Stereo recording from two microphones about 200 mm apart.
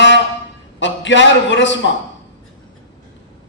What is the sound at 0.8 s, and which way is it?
A man's voice, 65° left (ahead or behind).